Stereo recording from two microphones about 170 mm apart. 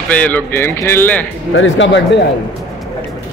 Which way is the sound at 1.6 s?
90° left.